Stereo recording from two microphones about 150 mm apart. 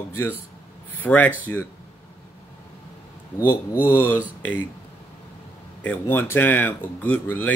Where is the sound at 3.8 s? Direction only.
15° left (ahead or behind).